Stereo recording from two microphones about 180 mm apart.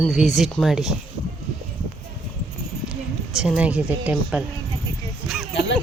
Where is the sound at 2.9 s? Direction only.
5° right (ahead or behind).